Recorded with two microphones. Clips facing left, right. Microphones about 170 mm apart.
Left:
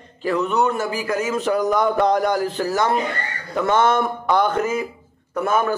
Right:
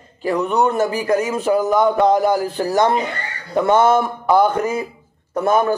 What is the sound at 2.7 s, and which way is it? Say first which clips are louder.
A man's voice: right 6 dB; 20° right (ahead or behind).